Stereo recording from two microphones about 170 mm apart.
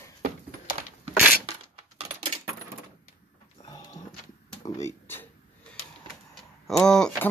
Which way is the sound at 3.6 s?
20° left (ahead or behind).